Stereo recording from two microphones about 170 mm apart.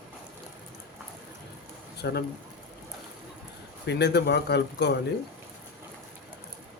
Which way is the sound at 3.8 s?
80° left.